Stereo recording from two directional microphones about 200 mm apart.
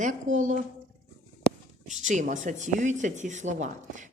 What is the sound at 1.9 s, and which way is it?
Speech, 35° right (ahead or behind).